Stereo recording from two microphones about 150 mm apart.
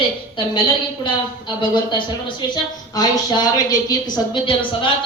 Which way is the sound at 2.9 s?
25° left (ahead or behind).